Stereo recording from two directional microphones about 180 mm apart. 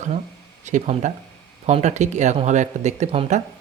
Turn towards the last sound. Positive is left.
turn(degrees=-35)  # may be behind; listen again after turning